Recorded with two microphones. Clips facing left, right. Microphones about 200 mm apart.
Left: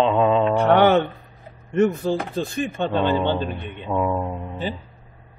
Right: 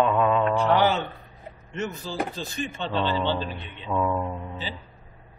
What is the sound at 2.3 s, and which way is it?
A man's voice, 55° left (ahead or behind).